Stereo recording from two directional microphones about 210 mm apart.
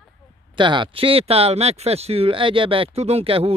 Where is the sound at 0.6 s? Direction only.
20° right (ahead or behind).